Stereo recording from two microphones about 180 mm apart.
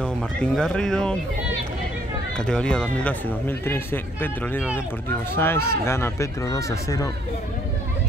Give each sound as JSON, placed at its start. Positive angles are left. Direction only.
{"t": 0.6, "sound": "speech", "side_deg": 5}
{"t": 2.3, "sound": "speech", "side_deg": 5}